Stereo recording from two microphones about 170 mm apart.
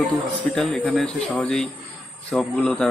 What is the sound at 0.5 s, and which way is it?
A man's voice, centre (ahead or behind).